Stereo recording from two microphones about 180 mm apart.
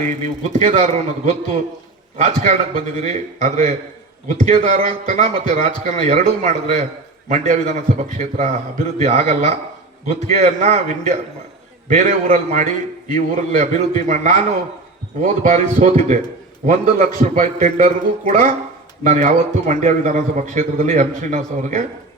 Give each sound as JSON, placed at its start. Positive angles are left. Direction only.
{"t": 0.2, "sound": "a man's voice", "side_deg": -40}